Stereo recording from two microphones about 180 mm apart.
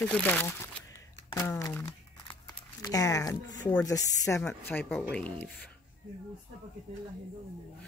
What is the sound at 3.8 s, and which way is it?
Speech, 20° left (ahead or behind).